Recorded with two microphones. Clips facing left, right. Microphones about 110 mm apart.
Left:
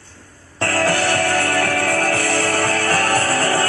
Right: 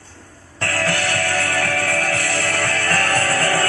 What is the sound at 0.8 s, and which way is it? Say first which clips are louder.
Music: left 4 dB; 20° left (ahead or behind).